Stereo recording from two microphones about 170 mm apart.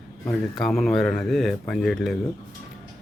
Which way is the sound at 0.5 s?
Centre (ahead or behind).